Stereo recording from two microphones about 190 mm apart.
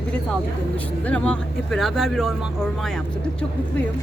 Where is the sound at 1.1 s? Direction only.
5° left (ahead or behind).